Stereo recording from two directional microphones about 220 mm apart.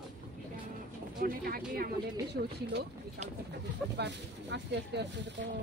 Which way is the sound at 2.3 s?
50° right (ahead or behind).